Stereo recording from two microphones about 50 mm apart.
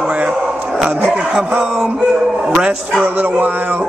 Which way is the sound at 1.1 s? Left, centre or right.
Centre.